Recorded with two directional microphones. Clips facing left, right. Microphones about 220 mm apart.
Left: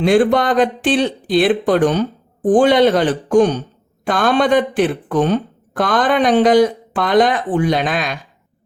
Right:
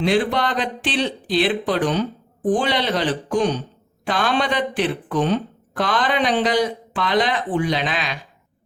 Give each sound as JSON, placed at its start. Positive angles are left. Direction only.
{"t": 0.0, "sound": "speech", "side_deg": 50}